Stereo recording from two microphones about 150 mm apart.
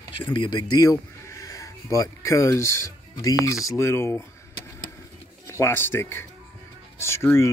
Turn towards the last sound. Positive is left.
turn(degrees=20)  # may be behind; listen again after turning